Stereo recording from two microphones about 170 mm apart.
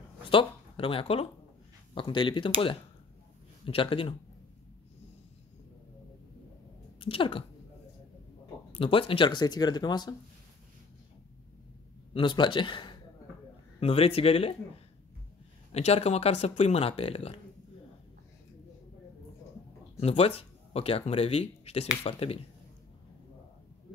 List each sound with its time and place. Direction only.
0.3 s speech: 30° left (ahead or behind)
3.6 s speech: 30° left (ahead or behind)
7.0 s speech: 30° left (ahead or behind)
8.7 s speech: 30° left (ahead or behind)
12.1 s speech: 30° left (ahead or behind)
15.7 s speech: 40° left (ahead or behind)
20.0 s speech: 35° left (ahead or behind)